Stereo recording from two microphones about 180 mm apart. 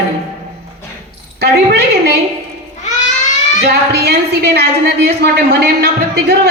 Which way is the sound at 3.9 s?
65° right (ahead or behind).